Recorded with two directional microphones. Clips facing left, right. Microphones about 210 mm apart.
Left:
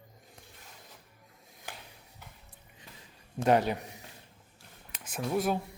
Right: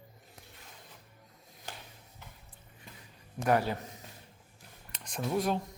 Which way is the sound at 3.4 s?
20° left (ahead or behind).